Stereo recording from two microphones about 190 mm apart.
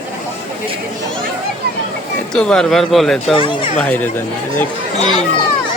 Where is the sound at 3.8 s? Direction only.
10° left (ahead or behind).